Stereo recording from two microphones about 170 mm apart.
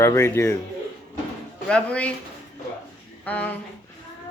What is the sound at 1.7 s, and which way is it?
Speech, 5° left (ahead or behind).